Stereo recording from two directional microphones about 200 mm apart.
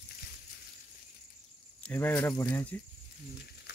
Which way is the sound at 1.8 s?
10° left (ahead or behind).